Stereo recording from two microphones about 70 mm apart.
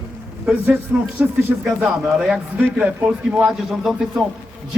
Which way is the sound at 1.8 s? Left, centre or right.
Centre.